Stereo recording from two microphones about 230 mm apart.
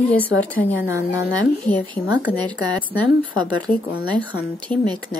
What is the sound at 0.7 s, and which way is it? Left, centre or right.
A woman's voice, centre.